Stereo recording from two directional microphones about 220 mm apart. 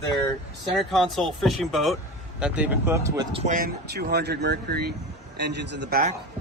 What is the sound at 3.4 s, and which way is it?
Speech, 40° right (ahead or behind).